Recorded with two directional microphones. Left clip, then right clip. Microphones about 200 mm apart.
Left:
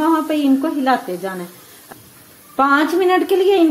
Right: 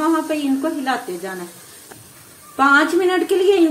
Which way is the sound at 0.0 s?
40° left (ahead or behind).